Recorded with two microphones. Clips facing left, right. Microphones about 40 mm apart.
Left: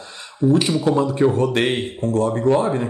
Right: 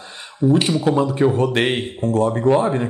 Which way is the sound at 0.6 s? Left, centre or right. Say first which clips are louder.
Even; centre.